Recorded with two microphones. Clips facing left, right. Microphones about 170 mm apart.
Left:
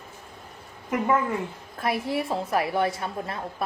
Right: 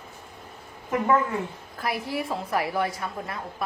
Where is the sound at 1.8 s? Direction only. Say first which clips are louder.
Left 3 dB; 25° left (ahead or behind).